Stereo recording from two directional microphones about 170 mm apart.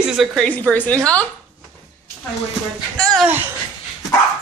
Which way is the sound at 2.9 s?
5° left (ahead or behind).